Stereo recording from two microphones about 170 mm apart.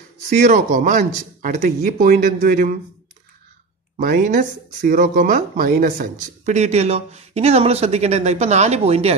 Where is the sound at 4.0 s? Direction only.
50° right (ahead or behind).